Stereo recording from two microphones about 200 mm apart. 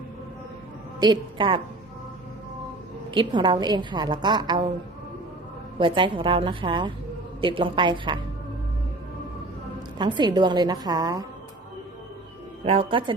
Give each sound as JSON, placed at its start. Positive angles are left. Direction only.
{"t": 0.9, "sound": "a woman's voice", "side_deg": -20}
{"t": 3.1, "sound": "a woman's voice", "side_deg": -25}
{"t": 5.8, "sound": "a woman's voice", "side_deg": -25}
{"t": 10.0, "sound": "a woman's voice", "side_deg": -20}
{"t": 12.6, "sound": "a woman's voice", "side_deg": -30}